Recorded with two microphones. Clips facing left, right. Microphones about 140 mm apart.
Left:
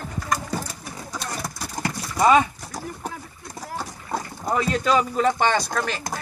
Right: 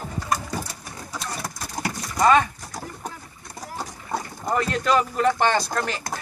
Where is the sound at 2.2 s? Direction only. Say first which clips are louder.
Left 1 dB; 10° left (ahead or behind).